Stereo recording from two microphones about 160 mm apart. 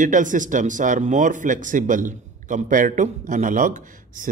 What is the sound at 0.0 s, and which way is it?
A man's voice, 55° right (ahead or behind).